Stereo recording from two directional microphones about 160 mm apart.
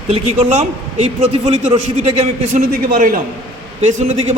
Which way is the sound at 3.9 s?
45° right (ahead or behind).